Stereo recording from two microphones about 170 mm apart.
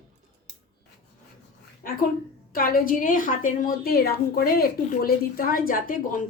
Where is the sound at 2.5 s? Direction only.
60° left (ahead or behind).